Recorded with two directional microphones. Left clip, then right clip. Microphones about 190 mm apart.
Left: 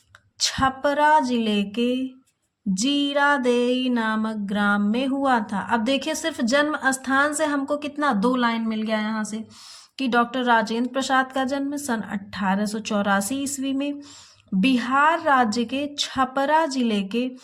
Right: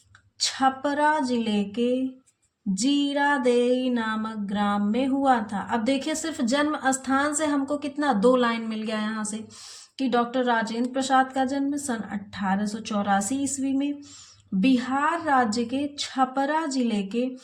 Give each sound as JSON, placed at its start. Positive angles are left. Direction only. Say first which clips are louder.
{"t": 0.3, "sound": "a woman's voice", "louder": "left 1 dB", "side_deg": 30}
{"t": 2.7, "sound": "a sound", "louder": "left 2 dB", "side_deg": 30}
{"t": 10.0, "sound": "a woman's voice", "louder": "left 2 dB", "side_deg": 30}